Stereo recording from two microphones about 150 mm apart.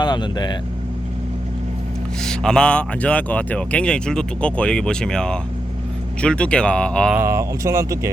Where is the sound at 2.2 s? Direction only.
5° left (ahead or behind).